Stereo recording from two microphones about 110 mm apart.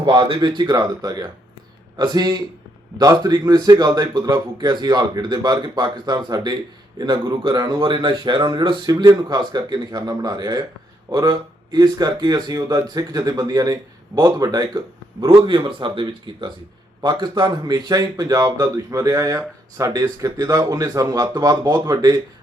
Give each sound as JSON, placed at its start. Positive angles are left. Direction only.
{"t": 0.0, "sound": "speech", "side_deg": -45}